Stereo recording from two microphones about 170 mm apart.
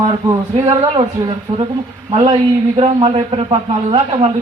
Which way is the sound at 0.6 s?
20° right (ahead or behind).